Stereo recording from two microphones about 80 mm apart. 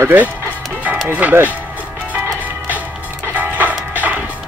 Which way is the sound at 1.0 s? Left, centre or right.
Right.